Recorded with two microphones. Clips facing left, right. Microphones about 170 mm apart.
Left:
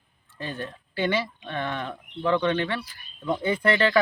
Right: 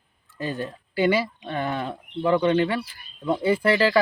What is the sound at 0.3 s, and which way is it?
Speech, 40° right (ahead or behind).